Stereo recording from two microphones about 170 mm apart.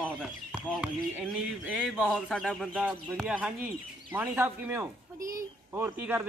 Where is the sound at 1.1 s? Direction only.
5° left (ahead or behind).